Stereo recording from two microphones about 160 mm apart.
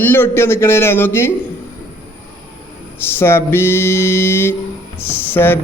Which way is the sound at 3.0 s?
15° left (ahead or behind).